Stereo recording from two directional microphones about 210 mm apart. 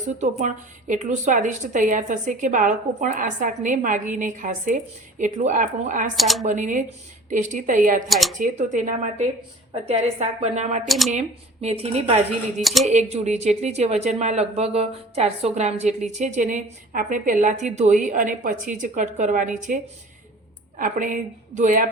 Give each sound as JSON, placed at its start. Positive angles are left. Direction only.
{"t": 0.2, "sound": "speech", "side_deg": -35}
{"t": 6.1, "sound": "speech", "side_deg": 0}
{"t": 6.4, "sound": "speech", "side_deg": -35}
{"t": 8.0, "sound": "speech", "side_deg": 0}
{"t": 8.4, "sound": "speech", "side_deg": -35}
{"t": 10.8, "sound": "speech", "side_deg": 0}
{"t": 11.1, "sound": "speech", "side_deg": -35}
{"t": 12.6, "sound": "speech", "side_deg": 0}
{"t": 12.9, "sound": "speech", "side_deg": -30}